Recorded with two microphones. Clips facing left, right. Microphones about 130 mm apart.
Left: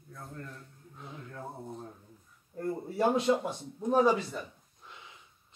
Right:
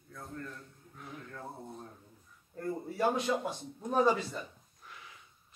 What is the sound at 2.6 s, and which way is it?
Speech, 30° left (ahead or behind).